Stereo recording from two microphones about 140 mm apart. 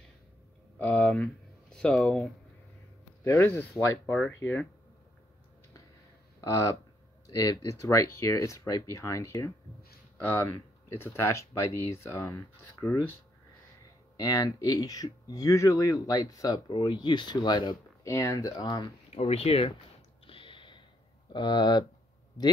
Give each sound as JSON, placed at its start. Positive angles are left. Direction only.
{"t": 0.7, "sound": "speech", "side_deg": 10}
{"t": 3.3, "sound": "speech", "side_deg": 15}
{"t": 6.4, "sound": "speech", "side_deg": 20}
{"t": 14.1, "sound": "speech", "side_deg": 25}
{"t": 18.0, "sound": "speech", "side_deg": 20}
{"t": 19.0, "sound": "speech", "side_deg": 50}
{"t": 20.2, "sound": "a sound", "side_deg": 35}
{"t": 21.3, "sound": "speech", "side_deg": 30}